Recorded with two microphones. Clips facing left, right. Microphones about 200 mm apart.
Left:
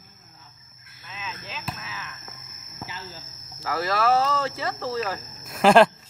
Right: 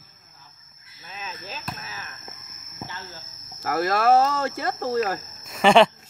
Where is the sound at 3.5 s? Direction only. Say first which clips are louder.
Right 2 dB; 50° right (ahead or behind).